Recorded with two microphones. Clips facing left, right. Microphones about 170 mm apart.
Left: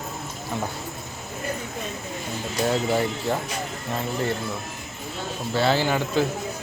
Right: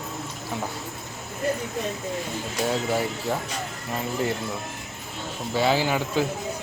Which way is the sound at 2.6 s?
5° right (ahead or behind).